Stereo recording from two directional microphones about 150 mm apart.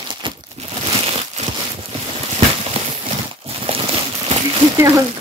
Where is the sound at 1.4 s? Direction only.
45° right (ahead or behind).